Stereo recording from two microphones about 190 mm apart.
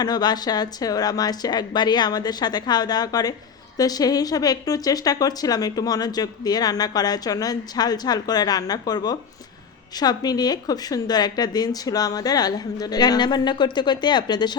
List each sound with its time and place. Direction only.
0.0 s speech: 20° left (ahead or behind)